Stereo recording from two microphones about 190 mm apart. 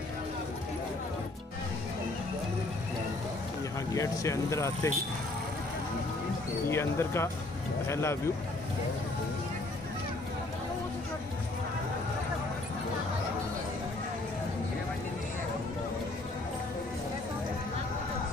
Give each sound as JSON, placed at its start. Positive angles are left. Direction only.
{"t": 3.9, "sound": "speech", "side_deg": 15}
{"t": 6.7, "sound": "speech", "side_deg": 15}